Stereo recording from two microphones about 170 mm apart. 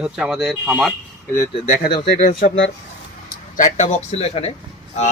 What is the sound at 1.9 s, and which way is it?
Speech, 30° left (ahead or behind).